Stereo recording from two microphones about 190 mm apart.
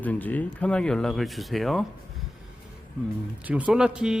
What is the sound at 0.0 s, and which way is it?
Speech, 10° left (ahead or behind).